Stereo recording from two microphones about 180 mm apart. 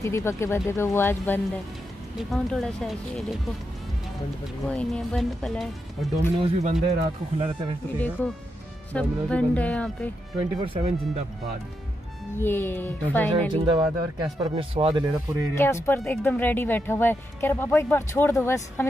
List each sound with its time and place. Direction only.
0.0 s speech: 15° left (ahead or behind); by 3.3 s centre (ahead or behind)
4.6 s speech: 5° left (ahead or behind)
6.4 s speech: 35° right (ahead or behind)
8.2 s speech: 10° left (ahead or behind)
10.6 s speech: 30° right (ahead or behind)
12.4 s speech: 15° left (ahead or behind)
13.5 s speech: 25° right (ahead or behind)
15.5 s speech: 15° left (ahead or behind)